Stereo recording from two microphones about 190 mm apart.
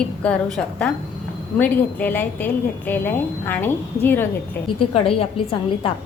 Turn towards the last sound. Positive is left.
turn(degrees=30)  # may be behind; listen again after turning